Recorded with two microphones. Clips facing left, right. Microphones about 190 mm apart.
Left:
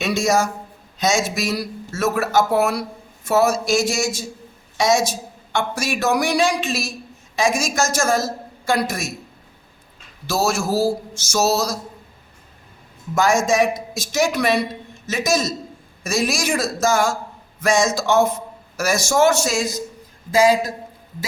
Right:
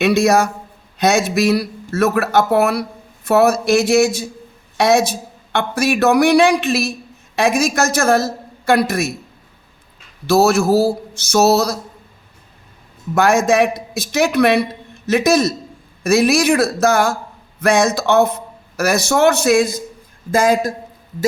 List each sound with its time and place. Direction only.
0.0 s speech: 60° right (ahead or behind)
10.2 s speech: 60° right (ahead or behind)
13.1 s a man's voice: 60° right (ahead or behind)